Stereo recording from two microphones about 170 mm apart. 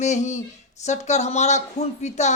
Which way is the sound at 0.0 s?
45° left (ahead or behind).